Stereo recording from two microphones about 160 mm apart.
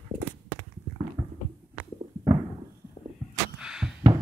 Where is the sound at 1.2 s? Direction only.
25° right (ahead or behind).